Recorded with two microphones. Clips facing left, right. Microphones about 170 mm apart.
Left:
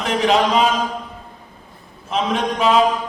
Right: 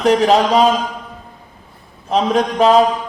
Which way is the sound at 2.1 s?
35° right (ahead or behind).